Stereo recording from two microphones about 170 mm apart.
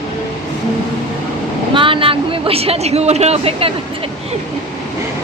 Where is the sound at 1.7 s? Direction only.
30° right (ahead or behind).